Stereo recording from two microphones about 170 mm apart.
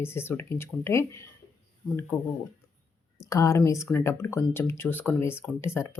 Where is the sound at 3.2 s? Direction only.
20° left (ahead or behind).